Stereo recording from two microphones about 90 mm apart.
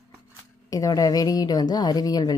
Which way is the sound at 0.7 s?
40° left (ahead or behind).